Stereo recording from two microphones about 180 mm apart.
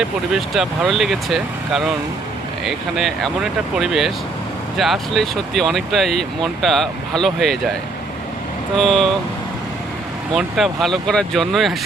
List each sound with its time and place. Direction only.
0.0 s speech: centre (ahead or behind)
8.8 s speech: centre (ahead or behind)
10.3 s speech: centre (ahead or behind)